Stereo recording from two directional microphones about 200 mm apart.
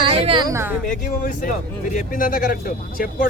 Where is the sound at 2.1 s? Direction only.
45° left (ahead or behind).